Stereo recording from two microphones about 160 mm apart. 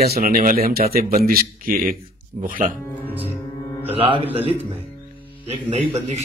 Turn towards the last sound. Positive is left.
turn(degrees=-45)  # may be behind; listen again after turning